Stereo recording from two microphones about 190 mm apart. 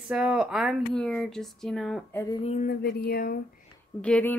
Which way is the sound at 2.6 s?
55° left (ahead or behind).